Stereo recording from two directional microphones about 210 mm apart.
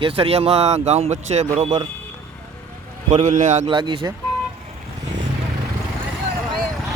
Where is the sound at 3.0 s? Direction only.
35° right (ahead or behind).